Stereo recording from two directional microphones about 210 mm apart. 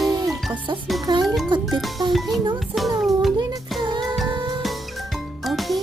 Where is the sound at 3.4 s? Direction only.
20° right (ahead or behind).